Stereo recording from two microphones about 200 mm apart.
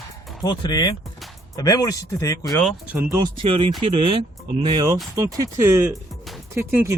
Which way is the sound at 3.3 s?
25° right (ahead or behind).